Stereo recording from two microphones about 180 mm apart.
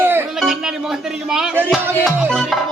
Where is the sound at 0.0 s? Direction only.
10° right (ahead or behind).